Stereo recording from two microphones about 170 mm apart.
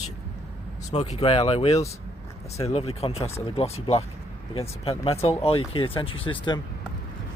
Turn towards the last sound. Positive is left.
turn(degrees=30)  # may be behind; listen again after turning